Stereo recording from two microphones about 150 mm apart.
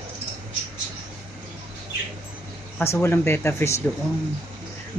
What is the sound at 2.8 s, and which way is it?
Speech, 15° left (ahead or behind).